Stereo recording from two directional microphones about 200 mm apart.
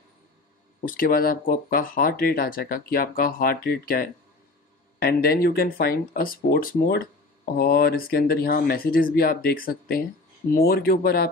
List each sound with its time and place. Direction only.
0.7 s speech: 45° left (ahead or behind)